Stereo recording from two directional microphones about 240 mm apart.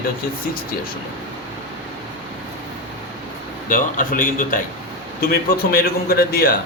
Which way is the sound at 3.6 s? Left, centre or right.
Left.